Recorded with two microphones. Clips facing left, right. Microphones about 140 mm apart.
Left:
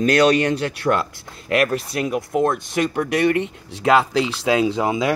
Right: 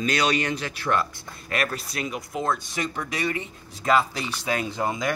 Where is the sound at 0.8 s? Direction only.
60° left (ahead or behind).